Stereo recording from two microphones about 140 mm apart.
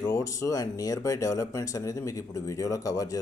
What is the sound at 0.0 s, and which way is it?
Speech, 20° left (ahead or behind).